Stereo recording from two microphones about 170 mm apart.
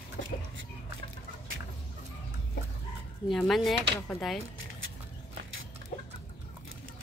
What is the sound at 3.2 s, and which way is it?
Speech, centre (ahead or behind).